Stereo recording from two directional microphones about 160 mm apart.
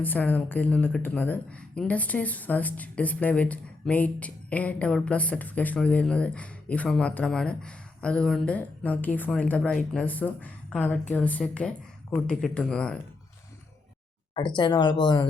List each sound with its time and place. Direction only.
0.0 s speech: 10° left (ahead or behind)
14.3 s speech: 30° left (ahead or behind)